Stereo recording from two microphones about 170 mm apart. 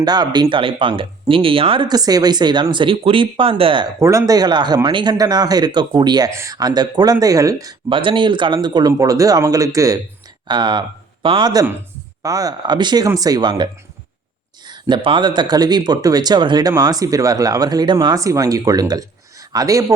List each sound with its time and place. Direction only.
0.0 s speech: 25° right (ahead or behind)
14.7 s speech: 30° right (ahead or behind)